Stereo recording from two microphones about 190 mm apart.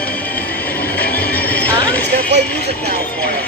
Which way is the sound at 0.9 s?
10° left (ahead or behind).